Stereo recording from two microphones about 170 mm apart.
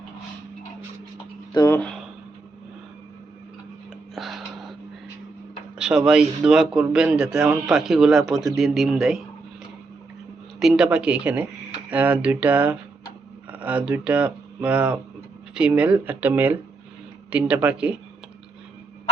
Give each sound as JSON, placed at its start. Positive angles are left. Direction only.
{"t": 1.5, "sound": "speech", "side_deg": 20}
{"t": 4.1, "sound": "a sound", "side_deg": 0}
{"t": 5.7, "sound": "speech", "side_deg": -5}
{"t": 10.6, "sound": "speech", "side_deg": -5}